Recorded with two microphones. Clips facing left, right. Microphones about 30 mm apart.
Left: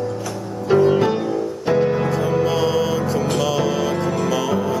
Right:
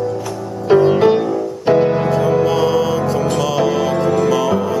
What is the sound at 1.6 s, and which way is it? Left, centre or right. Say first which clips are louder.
Piano: right 5 dB; centre.